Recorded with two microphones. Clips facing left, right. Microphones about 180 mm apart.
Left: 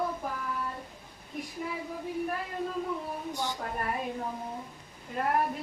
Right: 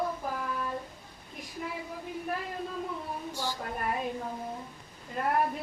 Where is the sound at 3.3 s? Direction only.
20° left (ahead or behind).